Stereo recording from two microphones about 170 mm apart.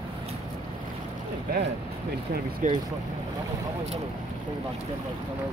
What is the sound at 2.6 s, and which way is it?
Speech, 50° right (ahead or behind).